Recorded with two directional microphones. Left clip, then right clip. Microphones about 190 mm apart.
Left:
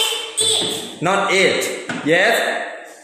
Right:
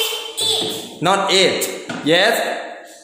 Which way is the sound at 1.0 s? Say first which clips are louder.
Right 1 dB; 10° right (ahead or behind).